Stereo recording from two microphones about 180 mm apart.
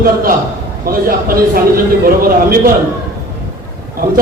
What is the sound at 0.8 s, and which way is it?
Speech, 55° right (ahead or behind).